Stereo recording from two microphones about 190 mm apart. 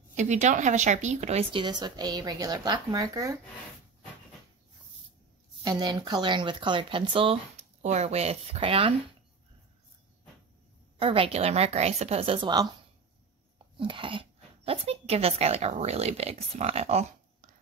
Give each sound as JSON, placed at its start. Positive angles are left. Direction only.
{"t": 0.1, "sound": "speech", "side_deg": -40}
{"t": 5.6, "sound": "speech", "side_deg": -20}
{"t": 11.0, "sound": "a woman's voice", "side_deg": -30}
{"t": 13.7, "sound": "a woman's voice", "side_deg": -25}